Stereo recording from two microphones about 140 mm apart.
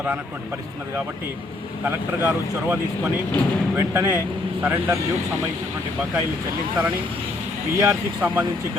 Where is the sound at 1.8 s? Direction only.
15° right (ahead or behind).